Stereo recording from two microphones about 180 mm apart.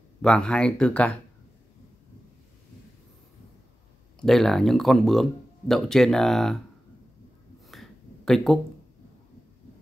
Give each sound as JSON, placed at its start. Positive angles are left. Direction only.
{"t": 0.2, "sound": "speech", "side_deg": 5}
{"t": 4.2, "sound": "speech", "side_deg": 0}
{"t": 7.6, "sound": "a sound", "side_deg": 0}